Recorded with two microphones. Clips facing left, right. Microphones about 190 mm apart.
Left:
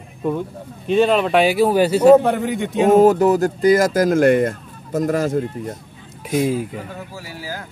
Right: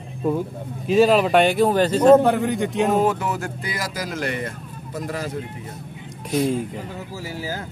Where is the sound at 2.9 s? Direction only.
40° left (ahead or behind).